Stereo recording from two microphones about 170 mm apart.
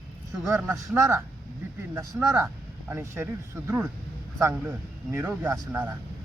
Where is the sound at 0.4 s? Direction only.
15° right (ahead or behind).